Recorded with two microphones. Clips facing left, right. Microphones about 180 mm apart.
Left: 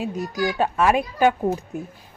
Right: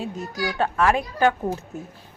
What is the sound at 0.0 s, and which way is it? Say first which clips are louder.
A woman's voice: left 4 dB; 15° left (ahead or behind).